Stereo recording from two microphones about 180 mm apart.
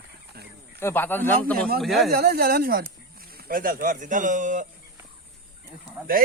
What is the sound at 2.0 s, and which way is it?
A man's voice, 60° right (ahead or behind).